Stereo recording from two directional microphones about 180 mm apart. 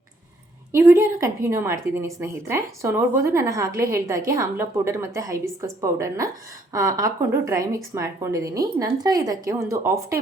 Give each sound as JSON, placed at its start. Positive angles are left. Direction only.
{"t": 0.7, "sound": "a woman's voice", "side_deg": -15}